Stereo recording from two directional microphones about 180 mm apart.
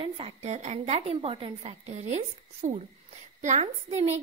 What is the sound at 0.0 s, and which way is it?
A woman's voice, 35° right (ahead or behind).